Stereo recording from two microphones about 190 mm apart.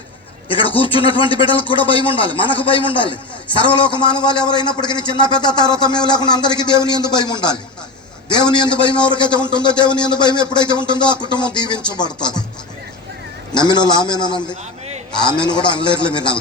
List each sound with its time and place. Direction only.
0.4 s a man's voice: 25° left (ahead or behind)
13.5 s a man's voice: 25° left (ahead or behind)
15.2 s a man's voice: 5° left (ahead or behind)
15.5 s a man's voice: 25° left (ahead or behind)